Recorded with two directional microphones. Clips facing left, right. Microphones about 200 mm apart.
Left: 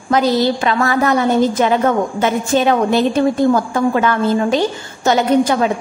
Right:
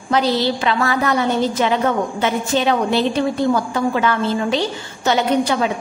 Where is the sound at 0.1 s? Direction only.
45° left (ahead or behind).